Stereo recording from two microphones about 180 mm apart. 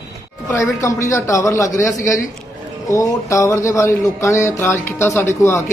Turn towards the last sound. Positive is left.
turn(degrees=15)  # may be behind; listen again after turning